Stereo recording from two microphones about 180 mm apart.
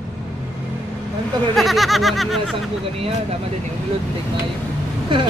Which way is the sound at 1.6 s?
Centre (ahead or behind).